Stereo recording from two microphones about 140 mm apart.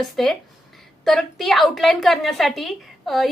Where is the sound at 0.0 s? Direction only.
Centre (ahead or behind).